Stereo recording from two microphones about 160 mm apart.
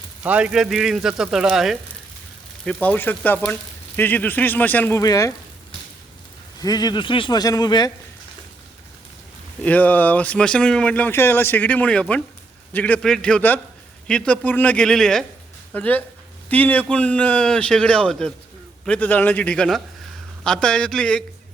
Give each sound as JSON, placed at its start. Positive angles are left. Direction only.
{"t": 0.2, "sound": "speech", "side_deg": -10}
{"t": 2.6, "sound": "speech", "side_deg": 10}
{"t": 6.6, "sound": "a man's voice", "side_deg": 25}
{"t": 9.6, "sound": "speech", "side_deg": 10}